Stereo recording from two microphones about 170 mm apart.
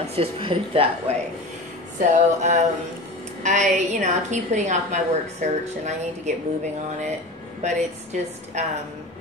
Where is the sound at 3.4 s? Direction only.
45° right (ahead or behind).